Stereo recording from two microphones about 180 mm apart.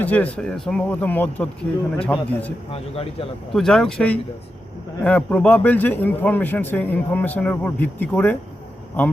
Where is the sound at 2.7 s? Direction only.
30° left (ahead or behind).